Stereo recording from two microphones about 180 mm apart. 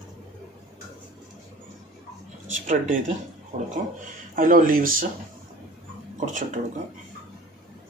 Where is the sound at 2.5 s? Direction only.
45° right (ahead or behind).